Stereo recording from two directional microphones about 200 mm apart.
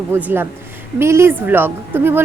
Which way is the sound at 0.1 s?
10° right (ahead or behind).